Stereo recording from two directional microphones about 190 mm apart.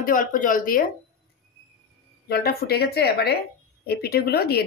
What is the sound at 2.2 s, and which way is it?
Speech, 55° left (ahead or behind).